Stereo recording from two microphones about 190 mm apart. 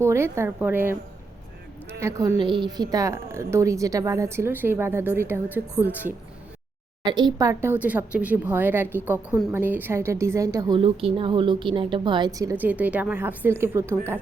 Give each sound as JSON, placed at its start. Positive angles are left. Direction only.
{"t": 0.0, "sound": "a woman's voice", "side_deg": -15}
{"t": 2.0, "sound": "a woman's voice", "side_deg": -15}
{"t": 7.0, "sound": "a woman's voice", "side_deg": -25}
{"t": 10.8, "sound": "a woman's voice", "side_deg": -30}